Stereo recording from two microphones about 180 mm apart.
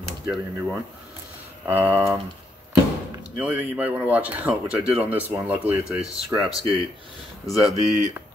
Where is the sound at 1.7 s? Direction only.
10° right (ahead or behind).